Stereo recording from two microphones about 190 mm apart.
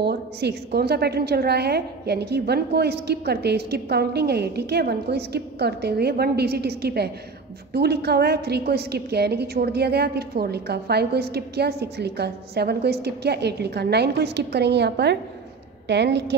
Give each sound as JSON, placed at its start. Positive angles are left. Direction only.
{"t": 0.0, "sound": "a woman's voice", "side_deg": -60}